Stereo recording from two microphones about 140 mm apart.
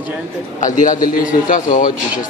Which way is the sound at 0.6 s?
65° left (ahead or behind).